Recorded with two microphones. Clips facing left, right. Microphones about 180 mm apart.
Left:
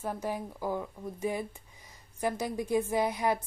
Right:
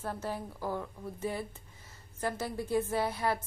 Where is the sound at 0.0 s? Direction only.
15° left (ahead or behind).